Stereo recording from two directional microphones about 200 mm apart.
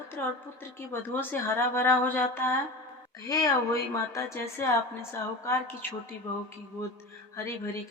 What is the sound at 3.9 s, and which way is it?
A woman's voice, 15° left (ahead or behind).